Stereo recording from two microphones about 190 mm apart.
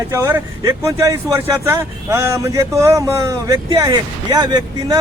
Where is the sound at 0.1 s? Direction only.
15° right (ahead or behind).